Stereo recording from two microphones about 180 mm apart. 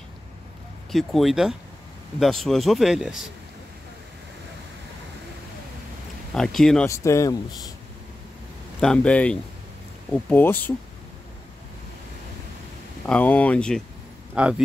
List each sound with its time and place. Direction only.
0.9 s speech: centre (ahead or behind)
6.3 s speech: centre (ahead or behind)
6.9 s speech: 15° left (ahead or behind)
8.8 s speech: 5° left (ahead or behind)
13.0 s speech: 10° left (ahead or behind)
14.3 s a man's voice: 5° right (ahead or behind)